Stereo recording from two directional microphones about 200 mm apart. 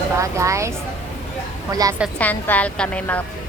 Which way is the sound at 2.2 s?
10° left (ahead or behind).